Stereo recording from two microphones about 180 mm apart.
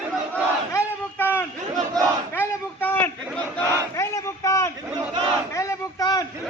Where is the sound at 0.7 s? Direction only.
10° left (ahead or behind).